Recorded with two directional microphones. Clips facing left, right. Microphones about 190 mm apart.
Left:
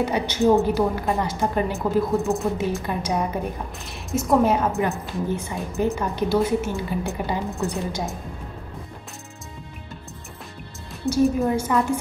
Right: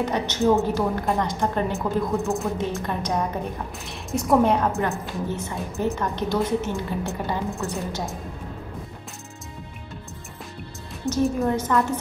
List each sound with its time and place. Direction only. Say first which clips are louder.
0.0 s a woman's voice: left 2 dB; 10° left (ahead or behind)
4.7 s a woman's voice: left 1 dB; 15° left (ahead or behind)
11.2 s a woman's voice: left 2 dB; 10° left (ahead or behind)